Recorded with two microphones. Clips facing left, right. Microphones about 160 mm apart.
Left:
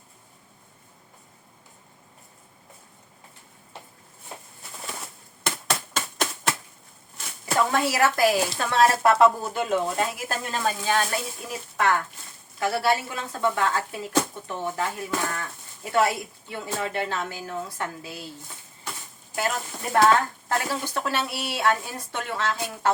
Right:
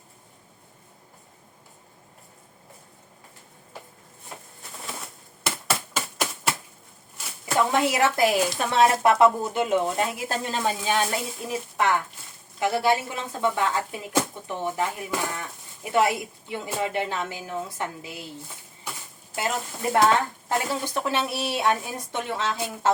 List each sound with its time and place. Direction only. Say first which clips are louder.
5.4 s a sound: even; 5° right (ahead or behind)
7.7 s a woman's voice: right 1 dB; 20° right (ahead or behind)
19.4 s a woman's voice: even; 20° right (ahead or behind)